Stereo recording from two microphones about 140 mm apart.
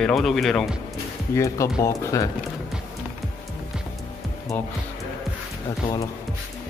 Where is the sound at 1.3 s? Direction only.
20° left (ahead or behind).